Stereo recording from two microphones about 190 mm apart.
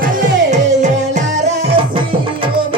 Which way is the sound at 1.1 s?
35° right (ahead or behind).